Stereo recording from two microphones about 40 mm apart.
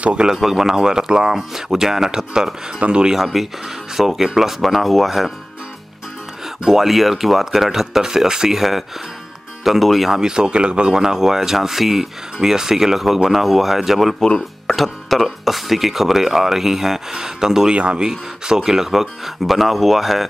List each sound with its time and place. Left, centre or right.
0.0 s speech: right
0.4 s speech: centre
2.8 s speech: right
3.2 s speech: centre
6.6 s speech: centre
10.1 s speech: centre
11.0 s speech: centre
14.7 s music: centre
15.2 s speech: centre
17.7 s speech: right
18.0 s speech: centre